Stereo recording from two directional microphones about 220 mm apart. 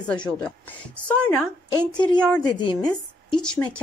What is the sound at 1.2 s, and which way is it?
Speech, 5° left (ahead or behind).